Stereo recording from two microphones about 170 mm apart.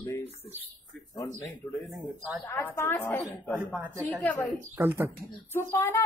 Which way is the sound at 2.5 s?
15° left (ahead or behind).